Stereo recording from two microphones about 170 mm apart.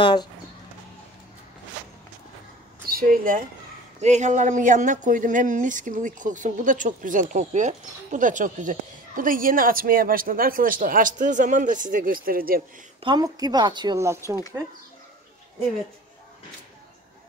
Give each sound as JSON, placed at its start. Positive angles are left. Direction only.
{"t": 0.0, "sound": "speech", "side_deg": 25}
{"t": 2.9, "sound": "speech", "side_deg": -55}
{"t": 4.0, "sound": "speech", "side_deg": -45}
{"t": 13.0, "sound": "a woman's voice", "side_deg": -25}